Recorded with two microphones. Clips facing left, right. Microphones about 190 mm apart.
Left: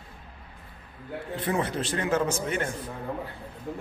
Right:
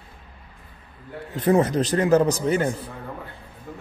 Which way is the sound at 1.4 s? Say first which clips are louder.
Right 10 dB; 40° right (ahead or behind).